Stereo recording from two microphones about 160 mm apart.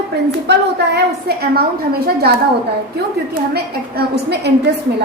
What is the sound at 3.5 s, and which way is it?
A woman's voice, 85° right.